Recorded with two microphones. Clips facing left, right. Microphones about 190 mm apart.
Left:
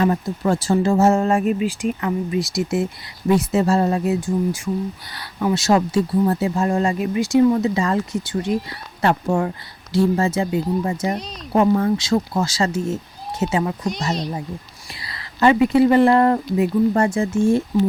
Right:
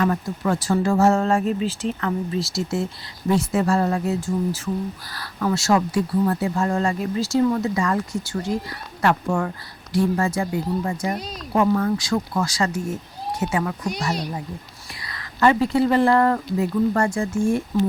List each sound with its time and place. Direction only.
0.0 s speech: 25° left (ahead or behind)
14.8 s speech: 25° left (ahead or behind)